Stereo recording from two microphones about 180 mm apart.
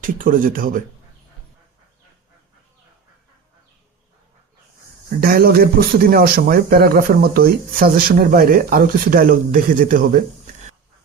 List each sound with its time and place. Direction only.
0.0 s speech: 50° right (ahead or behind)
5.2 s speech: 55° right (ahead or behind)